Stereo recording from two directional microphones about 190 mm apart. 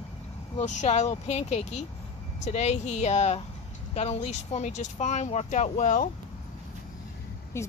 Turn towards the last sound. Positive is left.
turn(degrees=15)  # may be behind; listen again after turning